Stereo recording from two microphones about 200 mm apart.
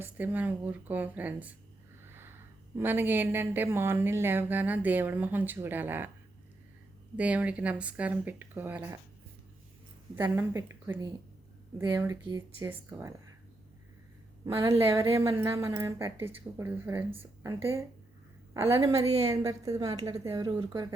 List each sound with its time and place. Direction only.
0.0 s speech: 10° right (ahead or behind)
2.0 s a sound: 10° right (ahead or behind)
2.7 s speech: 10° right (ahead or behind)
7.2 s speech: 5° right (ahead or behind)
10.3 s speech: 10° right (ahead or behind)
14.4 s speech: 15° right (ahead or behind)